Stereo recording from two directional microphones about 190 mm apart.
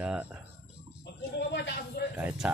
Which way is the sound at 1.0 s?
60° left (ahead or behind).